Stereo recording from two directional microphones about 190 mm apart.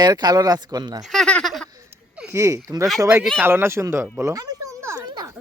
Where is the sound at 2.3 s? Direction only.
15° right (ahead or behind).